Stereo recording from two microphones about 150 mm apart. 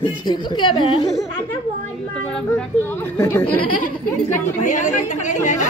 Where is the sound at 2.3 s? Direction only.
15° left (ahead or behind).